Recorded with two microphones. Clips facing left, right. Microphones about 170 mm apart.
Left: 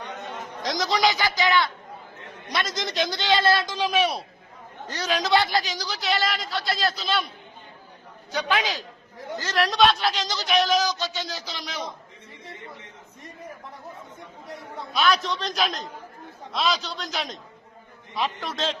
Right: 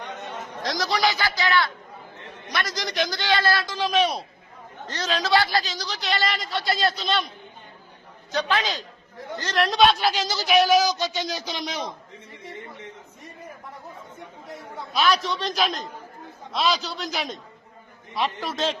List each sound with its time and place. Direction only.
0.6 s a man's voice: 20° left (ahead or behind); by 7.3 s centre (ahead or behind)
8.3 s a man's voice: 10° left (ahead or behind); by 11.9 s 20° right (ahead or behind)
14.9 s a man's voice: centre (ahead or behind)